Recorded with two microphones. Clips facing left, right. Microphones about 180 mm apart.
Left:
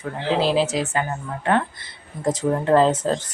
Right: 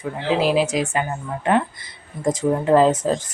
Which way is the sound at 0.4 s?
10° right (ahead or behind).